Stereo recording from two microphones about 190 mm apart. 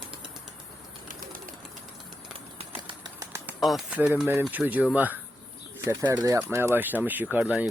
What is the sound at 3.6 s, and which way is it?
Speech, 5° right (ahead or behind).